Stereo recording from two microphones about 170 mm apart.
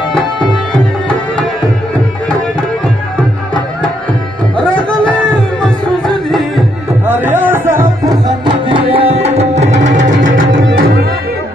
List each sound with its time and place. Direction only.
0.7 s tabla: centre (ahead or behind)
7.1 s music: 10° right (ahead or behind)
8.9 s tabla: 40° right (ahead or behind)
9.9 s music: 50° right (ahead or behind)